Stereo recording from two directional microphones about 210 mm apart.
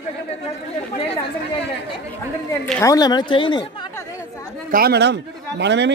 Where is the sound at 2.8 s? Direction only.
15° left (ahead or behind).